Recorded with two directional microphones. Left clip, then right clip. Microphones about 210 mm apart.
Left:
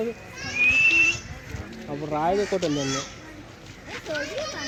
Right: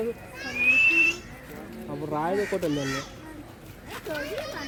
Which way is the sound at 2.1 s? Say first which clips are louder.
Left 3 dB; 55° left (ahead or behind).